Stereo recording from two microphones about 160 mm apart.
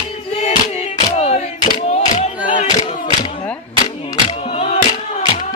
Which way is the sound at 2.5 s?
50° left (ahead or behind).